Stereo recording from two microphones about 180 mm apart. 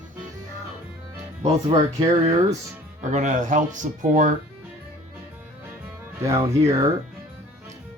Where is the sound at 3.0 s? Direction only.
40° right (ahead or behind).